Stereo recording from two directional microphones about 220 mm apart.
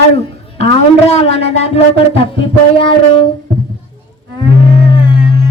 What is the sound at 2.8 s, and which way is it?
Speech, 25° left (ahead or behind).